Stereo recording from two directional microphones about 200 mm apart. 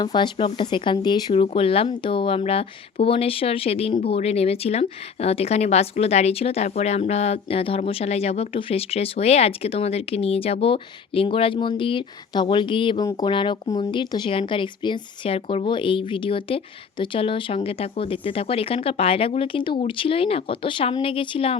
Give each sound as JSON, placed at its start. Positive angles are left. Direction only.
{"t": 0.0, "sound": "speech", "side_deg": 20}